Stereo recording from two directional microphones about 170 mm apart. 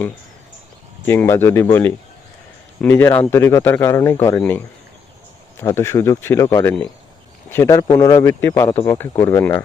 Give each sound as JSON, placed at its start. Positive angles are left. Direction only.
{"t": 1.0, "sound": "speech", "side_deg": 10}
{"t": 2.8, "sound": "speech", "side_deg": 15}